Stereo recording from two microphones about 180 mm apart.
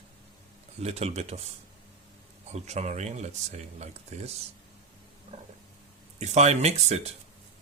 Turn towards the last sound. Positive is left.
turn(degrees=-35)  # may be behind; listen again after turning